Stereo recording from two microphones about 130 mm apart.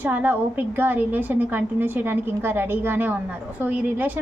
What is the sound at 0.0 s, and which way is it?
A woman's voice, 15° right (ahead or behind).